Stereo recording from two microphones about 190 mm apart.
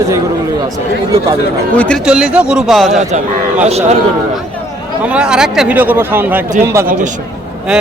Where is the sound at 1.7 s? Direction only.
5° left (ahead or behind).